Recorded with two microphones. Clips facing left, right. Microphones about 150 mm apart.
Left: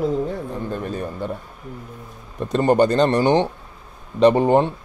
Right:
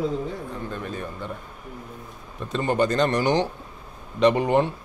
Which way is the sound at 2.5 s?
40° left (ahead or behind).